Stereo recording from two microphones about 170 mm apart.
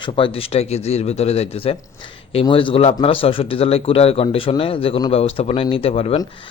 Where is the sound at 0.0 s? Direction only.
30° left (ahead or behind).